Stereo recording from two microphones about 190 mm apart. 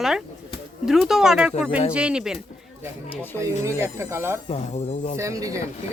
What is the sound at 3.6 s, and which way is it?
Speech, 15° right (ahead or behind).